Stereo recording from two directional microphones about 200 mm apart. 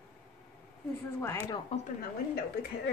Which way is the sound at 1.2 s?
15° left (ahead or behind).